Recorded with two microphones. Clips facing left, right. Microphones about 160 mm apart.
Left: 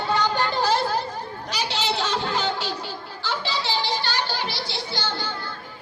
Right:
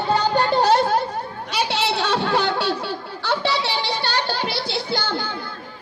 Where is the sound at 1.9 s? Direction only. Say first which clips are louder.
Right 4 dB; 65° right (ahead or behind).